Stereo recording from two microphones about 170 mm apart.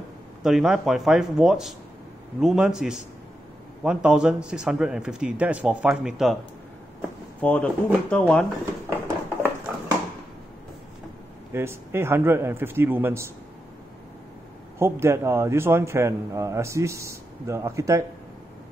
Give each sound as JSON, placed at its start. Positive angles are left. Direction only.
{"t": 0.4, "sound": "speech", "side_deg": -5}
{"t": 7.3, "sound": "speech", "side_deg": 10}
{"t": 9.0, "sound": "a sound", "side_deg": -20}
{"t": 11.5, "sound": "a man's voice", "side_deg": -15}
{"t": 14.8, "sound": "a man's voice", "side_deg": -15}